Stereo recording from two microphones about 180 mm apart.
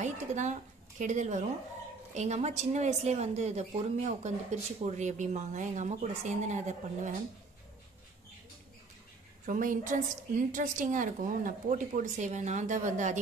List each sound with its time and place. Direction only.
0.0 s a woman's voice: 40° right (ahead or behind)
9.5 s a woman's voice: 45° right (ahead or behind)